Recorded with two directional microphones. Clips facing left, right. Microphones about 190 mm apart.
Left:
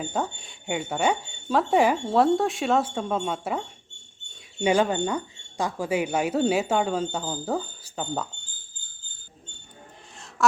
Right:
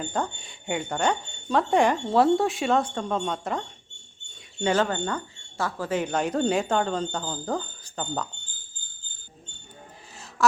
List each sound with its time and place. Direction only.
0.0 s speech: 5° left (ahead or behind)